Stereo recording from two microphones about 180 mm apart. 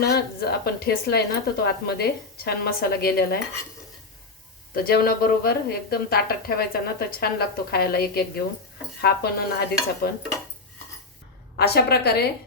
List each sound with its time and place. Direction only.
0.0 s a woman's voice: 65° left (ahead or behind)
4.7 s a woman's voice: 55° left (ahead or behind)
11.5 s a woman's voice: 65° left (ahead or behind)